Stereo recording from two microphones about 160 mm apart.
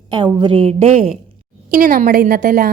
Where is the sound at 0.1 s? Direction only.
30° right (ahead or behind).